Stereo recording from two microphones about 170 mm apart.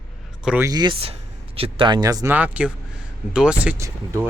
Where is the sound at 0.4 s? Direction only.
10° right (ahead or behind).